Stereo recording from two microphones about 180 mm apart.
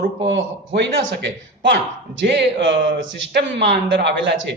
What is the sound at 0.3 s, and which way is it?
A man's voice, 85° right.